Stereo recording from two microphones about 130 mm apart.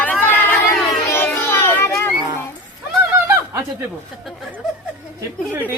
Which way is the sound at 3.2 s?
15° right (ahead or behind).